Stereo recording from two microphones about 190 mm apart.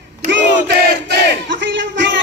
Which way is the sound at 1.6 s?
70° right (ahead or behind).